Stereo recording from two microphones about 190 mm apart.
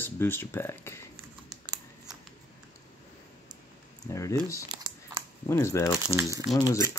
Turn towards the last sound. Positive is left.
turn(degrees=15)  # may be behind; listen again after turning